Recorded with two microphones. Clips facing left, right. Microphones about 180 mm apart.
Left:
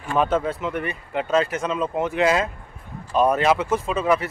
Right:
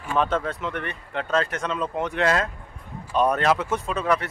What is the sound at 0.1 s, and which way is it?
Speech, 10° left (ahead or behind).